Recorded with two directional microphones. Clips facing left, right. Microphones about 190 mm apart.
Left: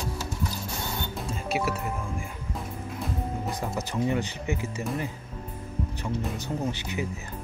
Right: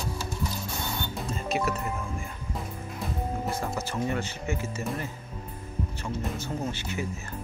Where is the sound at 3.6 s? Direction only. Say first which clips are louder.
Left 2 dB; 15° left (ahead or behind).